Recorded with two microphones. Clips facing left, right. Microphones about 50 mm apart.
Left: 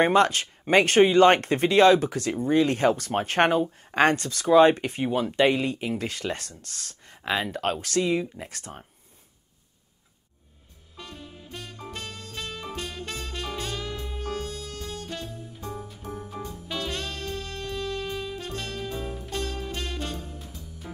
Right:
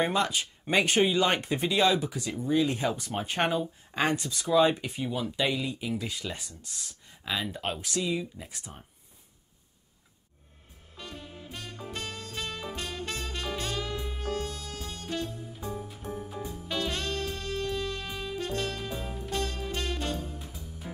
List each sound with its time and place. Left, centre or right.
0.0 s speech: left
4.5 s speech: left
5.9 s speech: left
7.2 s speech: left
7.5 s speech: left
8.5 s speech: left
11.0 s music: centre